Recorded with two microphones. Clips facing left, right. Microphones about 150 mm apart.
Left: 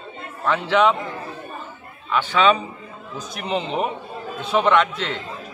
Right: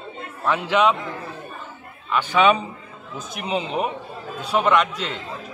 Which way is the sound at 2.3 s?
15° right (ahead or behind).